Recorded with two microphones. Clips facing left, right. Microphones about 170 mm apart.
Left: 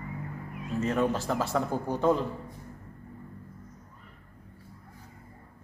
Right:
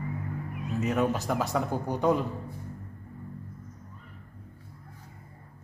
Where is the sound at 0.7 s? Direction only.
Centre (ahead or behind).